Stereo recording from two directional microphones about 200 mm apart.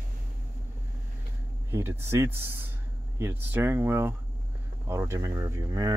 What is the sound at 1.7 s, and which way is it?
Speech, 15° right (ahead or behind).